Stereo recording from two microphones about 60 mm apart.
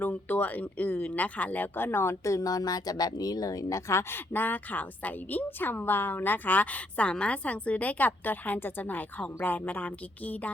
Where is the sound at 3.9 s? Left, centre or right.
Left.